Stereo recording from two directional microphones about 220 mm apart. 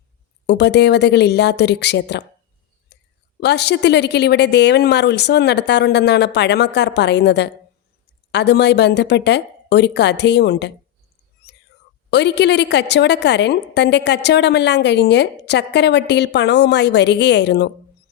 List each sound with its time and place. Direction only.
0.4 s a woman's voice: 50° left (ahead or behind)
2.9 s whispering: 50° left (ahead or behind)
3.4 s a woman's voice: 50° left (ahead or behind)
11.5 s whispering: 50° left (ahead or behind)
12.1 s a woman's voice: 50° left (ahead or behind)